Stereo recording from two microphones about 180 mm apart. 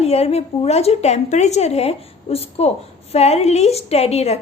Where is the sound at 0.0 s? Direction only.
35° left (ahead or behind).